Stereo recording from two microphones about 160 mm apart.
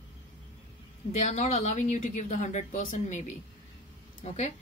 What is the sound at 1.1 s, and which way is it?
A woman's voice, 45° left (ahead or behind).